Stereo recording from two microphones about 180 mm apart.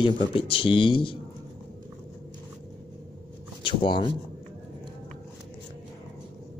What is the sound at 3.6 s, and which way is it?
Speech, 25° left (ahead or behind).